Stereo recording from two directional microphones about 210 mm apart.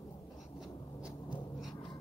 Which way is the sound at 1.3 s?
20° left (ahead or behind).